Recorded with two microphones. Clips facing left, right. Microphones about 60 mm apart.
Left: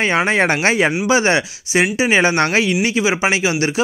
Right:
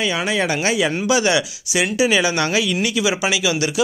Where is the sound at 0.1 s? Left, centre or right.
Left.